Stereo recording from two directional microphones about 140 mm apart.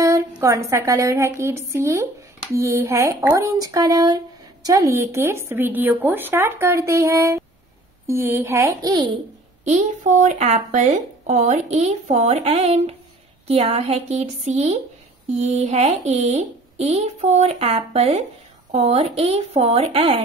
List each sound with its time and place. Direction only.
0.4 s speech: 20° right (ahead or behind)
8.9 s a child's voice: 30° right (ahead or behind)
9.7 s speech: 60° right (ahead or behind)